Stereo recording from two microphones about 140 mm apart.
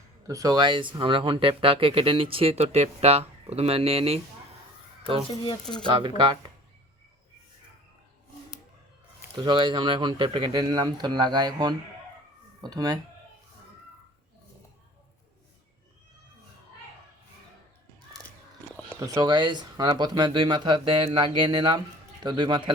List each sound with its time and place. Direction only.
0.3 s speech: 25° right (ahead or behind); by 4.2 s 45° right (ahead or behind)
5.8 s speech: 35° right (ahead or behind)
9.3 s speech: 35° right (ahead or behind)
18.9 s speech: 25° right (ahead or behind)